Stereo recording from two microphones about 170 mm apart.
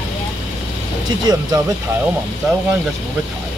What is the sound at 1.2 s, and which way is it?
Speech, 25° right (ahead or behind).